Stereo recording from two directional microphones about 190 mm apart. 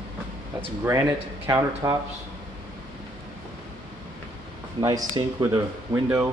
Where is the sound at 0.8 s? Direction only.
15° right (ahead or behind).